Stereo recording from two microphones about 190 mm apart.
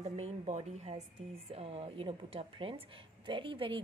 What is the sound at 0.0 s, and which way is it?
A woman's voice, 35° right (ahead or behind).